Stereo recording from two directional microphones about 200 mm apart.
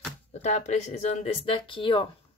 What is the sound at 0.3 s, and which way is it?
A woman's voice, 35° left (ahead or behind).